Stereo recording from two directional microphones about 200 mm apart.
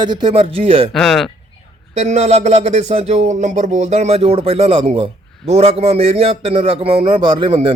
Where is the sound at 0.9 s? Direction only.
Centre (ahead or behind).